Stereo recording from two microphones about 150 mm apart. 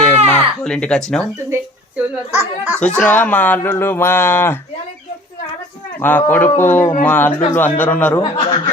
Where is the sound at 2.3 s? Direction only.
10° right (ahead or behind).